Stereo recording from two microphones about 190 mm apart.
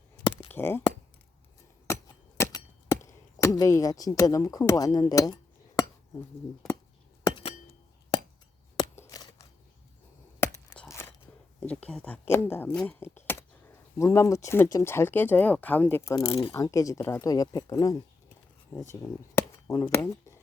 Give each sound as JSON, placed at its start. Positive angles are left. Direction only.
{"t": 0.5, "sound": "speech", "side_deg": 10}
{"t": 2.4, "sound": "a sound", "side_deg": 15}
{"t": 7.3, "sound": "chink", "side_deg": 25}
{"t": 8.7, "sound": "scissors", "side_deg": 20}
{"t": 11.6, "sound": "speech", "side_deg": 5}
{"t": 19.4, "sound": "cap gun", "side_deg": 15}
{"t": 19.9, "sound": "speech", "side_deg": 15}